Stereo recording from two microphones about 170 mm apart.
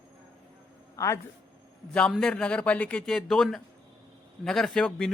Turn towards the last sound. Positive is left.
turn(degrees=5)  # may be behind; listen again after turning